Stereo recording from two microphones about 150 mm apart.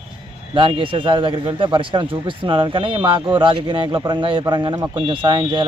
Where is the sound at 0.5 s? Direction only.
35° right (ahead or behind).